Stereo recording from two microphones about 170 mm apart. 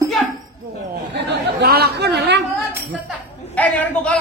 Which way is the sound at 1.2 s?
70° right (ahead or behind).